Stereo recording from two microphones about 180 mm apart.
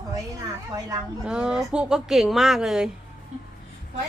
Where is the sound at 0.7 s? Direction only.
20° right (ahead or behind).